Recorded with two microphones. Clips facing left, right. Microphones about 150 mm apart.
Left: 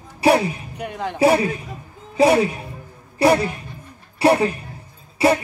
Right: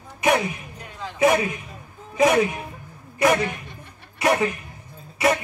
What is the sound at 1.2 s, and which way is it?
A man's voice, 30° left (ahead or behind).